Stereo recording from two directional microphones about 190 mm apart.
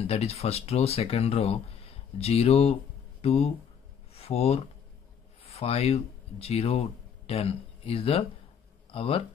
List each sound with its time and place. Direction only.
0.0 s speech: 30° left (ahead or behind)
4.1 s a sound: 30° left (ahead or behind)
5.4 s speech: 30° left (ahead or behind)